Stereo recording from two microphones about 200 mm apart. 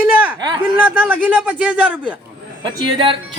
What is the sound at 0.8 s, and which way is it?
A man's voice, 10° right (ahead or behind).